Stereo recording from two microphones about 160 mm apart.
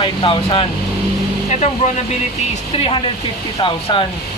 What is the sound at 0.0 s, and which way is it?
Speech, 30° left (ahead or behind).